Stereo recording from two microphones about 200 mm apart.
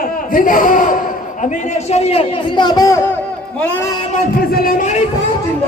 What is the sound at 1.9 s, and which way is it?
Speech, 30° left (ahead or behind).